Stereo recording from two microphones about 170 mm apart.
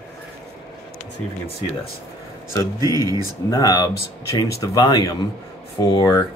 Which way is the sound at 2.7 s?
20° right (ahead or behind).